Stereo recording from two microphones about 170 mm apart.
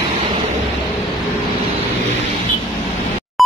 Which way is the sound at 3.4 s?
Centre (ahead or behind).